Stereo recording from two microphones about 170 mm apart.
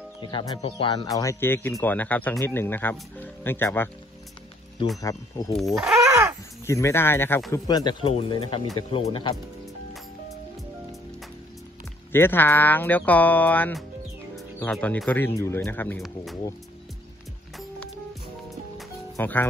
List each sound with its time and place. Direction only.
0.2 s speech: 25° left (ahead or behind)
5.0 s speech: 20° left (ahead or behind)
5.8 s speech: centre (ahead or behind)
6.6 s speech: 15° left (ahead or behind); by 9.3 s 30° left (ahead or behind)
12.1 s speech: 15° left (ahead or behind)
19.1 s speech: 10° left (ahead or behind)